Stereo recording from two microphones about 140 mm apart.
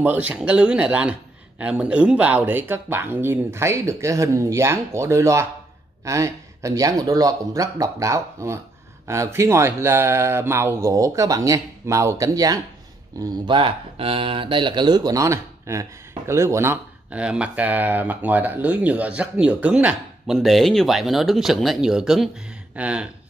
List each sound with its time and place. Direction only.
0.0 s speech: 10° right (ahead or behind)
13.2 s speech: 35° right (ahead or behind); by 23.0 s 5° right (ahead or behind)